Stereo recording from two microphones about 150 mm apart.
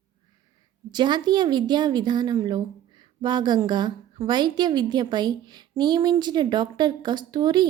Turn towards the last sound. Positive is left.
turn(degrees=-30)  # may be behind; listen again after turning